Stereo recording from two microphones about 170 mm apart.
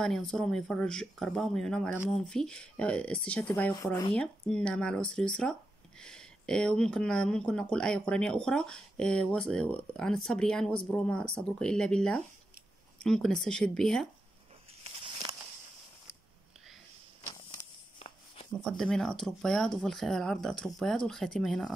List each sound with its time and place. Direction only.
0.0 s speech: 5° left (ahead or behind)
3.7 s speech: 25° left (ahead or behind)
4.1 s speech: 5° left (ahead or behind)
17.9 s a sound: 35° left (ahead or behind)
18.6 s speech: 5° left (ahead or behind)